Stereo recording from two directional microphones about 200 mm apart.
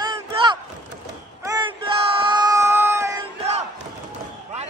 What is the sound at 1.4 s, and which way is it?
Crowd, 20° right (ahead or behind).